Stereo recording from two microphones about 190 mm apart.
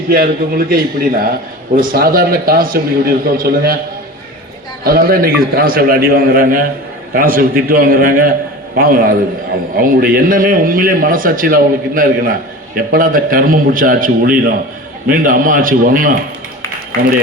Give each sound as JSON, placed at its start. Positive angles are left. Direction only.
{"t": 0.1, "sound": "a man's voice", "side_deg": -50}
{"t": 4.8, "sound": "a man's voice", "side_deg": -50}